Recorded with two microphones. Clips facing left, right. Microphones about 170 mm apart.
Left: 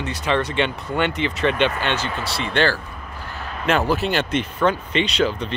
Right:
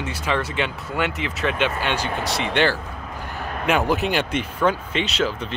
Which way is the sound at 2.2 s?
15° right (ahead or behind).